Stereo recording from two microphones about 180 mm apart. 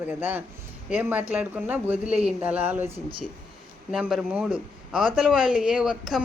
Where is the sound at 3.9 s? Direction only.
5° right (ahead or behind).